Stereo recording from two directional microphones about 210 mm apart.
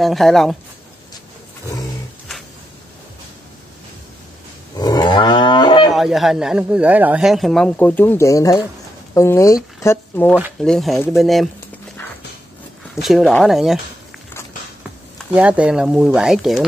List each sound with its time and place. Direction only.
0.0 s speech: centre (ahead or behind)
4.7 s wild animals: 20° left (ahead or behind)
5.9 s speech: centre (ahead or behind)
12.9 s speech: centre (ahead or behind)
15.3 s speech: 5° right (ahead or behind)